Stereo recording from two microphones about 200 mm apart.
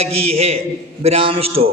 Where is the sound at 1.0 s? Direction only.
30° right (ahead or behind).